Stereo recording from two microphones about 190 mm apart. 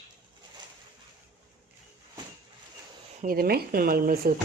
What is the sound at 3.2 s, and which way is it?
A woman's voice, 50° right (ahead or behind).